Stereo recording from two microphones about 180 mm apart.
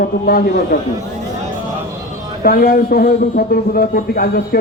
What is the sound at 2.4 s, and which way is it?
Speech, 55° left (ahead or behind).